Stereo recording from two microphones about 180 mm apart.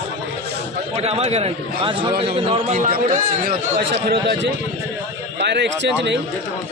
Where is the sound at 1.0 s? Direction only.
35° right (ahead or behind).